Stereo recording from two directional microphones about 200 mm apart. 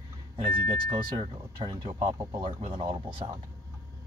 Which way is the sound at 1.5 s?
20° right (ahead or behind).